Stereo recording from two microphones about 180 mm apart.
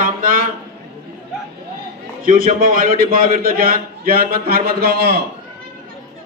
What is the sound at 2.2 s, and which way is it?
A man's voice, 50° right (ahead or behind).